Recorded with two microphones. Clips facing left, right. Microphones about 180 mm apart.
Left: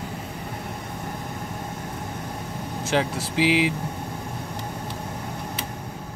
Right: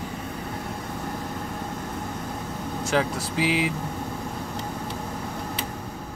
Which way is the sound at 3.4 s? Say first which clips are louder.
Left 4 dB; 30° right (ahead or behind).